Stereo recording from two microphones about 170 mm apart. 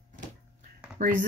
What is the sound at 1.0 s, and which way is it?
Speech, 50° right (ahead or behind).